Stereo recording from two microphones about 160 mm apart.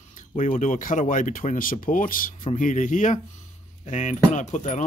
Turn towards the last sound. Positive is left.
turn(degrees=50)  # may be behind; listen again after turning